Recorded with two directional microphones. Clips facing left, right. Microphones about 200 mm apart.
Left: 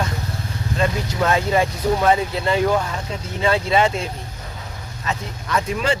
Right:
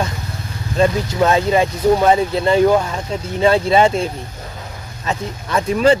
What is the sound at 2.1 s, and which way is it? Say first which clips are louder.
Speech: right 4 dB; 35° right (ahead or behind).